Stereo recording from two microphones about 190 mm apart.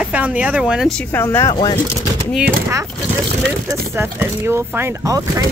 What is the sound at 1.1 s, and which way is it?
Speech, 10° left (ahead or behind).